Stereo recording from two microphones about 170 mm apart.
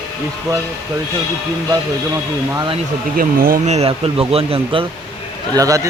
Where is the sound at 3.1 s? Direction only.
60° right (ahead or behind).